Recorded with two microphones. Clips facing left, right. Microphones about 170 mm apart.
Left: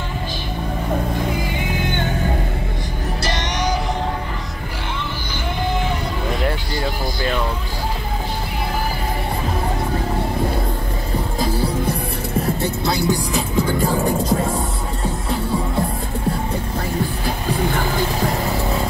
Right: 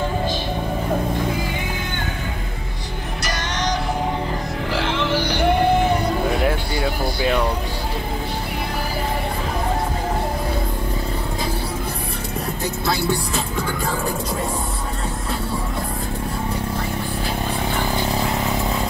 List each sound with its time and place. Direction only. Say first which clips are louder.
4.7 s music: right 8 dB; 90° right; by 5.7 s 65° right (ahead or behind)
6.4 s music: right 1 dB; 5° right (ahead or behind)
12.8 s music: left 1 dB; 20° left (ahead or behind)